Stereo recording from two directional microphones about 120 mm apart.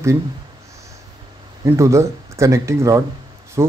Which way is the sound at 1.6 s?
25° right (ahead or behind).